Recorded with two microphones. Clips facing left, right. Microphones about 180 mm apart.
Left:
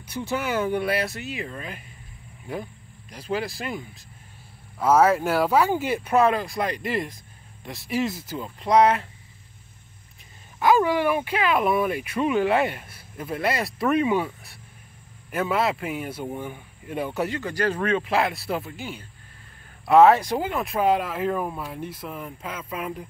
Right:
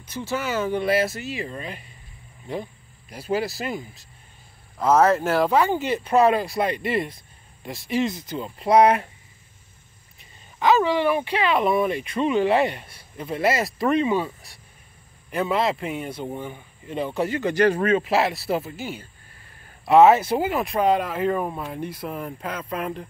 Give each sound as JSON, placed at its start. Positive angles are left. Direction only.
{"t": 0.0, "sound": "speech", "side_deg": 15}
{"t": 0.8, "sound": "speech", "side_deg": 0}
{"t": 3.1, "sound": "speech", "side_deg": -5}
{"t": 6.2, "sound": "speech", "side_deg": -5}
{"t": 8.5, "sound": "speech", "side_deg": -10}
{"t": 10.6, "sound": "speech", "side_deg": 10}
{"t": 17.4, "sound": "speech", "side_deg": -20}
{"t": 17.8, "sound": "speech", "side_deg": -5}